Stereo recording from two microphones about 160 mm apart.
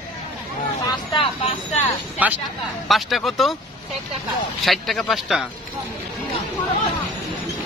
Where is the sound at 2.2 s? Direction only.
10° right (ahead or behind).